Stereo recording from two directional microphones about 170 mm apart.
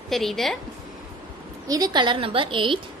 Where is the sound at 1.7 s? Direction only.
25° right (ahead or behind).